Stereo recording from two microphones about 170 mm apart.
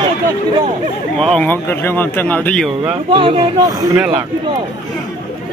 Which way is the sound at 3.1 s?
30° right (ahead or behind).